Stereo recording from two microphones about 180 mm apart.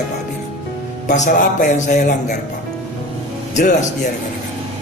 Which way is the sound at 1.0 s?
40° left (ahead or behind).